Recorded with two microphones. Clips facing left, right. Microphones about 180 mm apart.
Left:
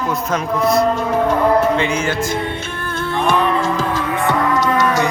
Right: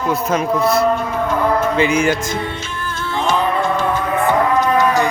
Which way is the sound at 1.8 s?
10° right (ahead or behind).